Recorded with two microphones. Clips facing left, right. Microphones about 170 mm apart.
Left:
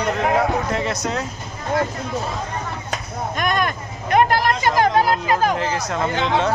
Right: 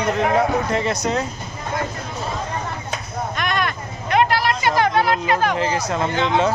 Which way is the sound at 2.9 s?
45° left (ahead or behind).